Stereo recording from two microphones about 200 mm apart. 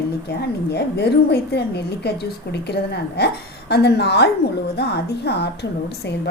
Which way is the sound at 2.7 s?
55° left (ahead or behind).